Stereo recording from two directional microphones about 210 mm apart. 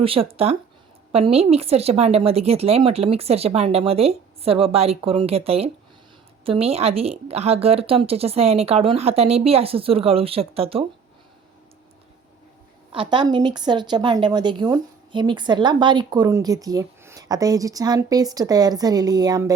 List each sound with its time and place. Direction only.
0.0 s speech: 25° right (ahead or behind)
12.9 s speech: 25° right (ahead or behind)